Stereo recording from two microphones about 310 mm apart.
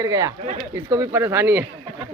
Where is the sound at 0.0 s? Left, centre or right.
Centre.